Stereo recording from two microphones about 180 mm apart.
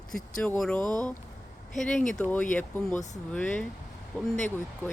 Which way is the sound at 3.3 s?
5° left (ahead or behind).